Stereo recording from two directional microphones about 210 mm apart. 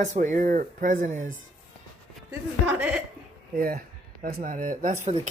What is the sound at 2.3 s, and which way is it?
Speech, 10° right (ahead or behind).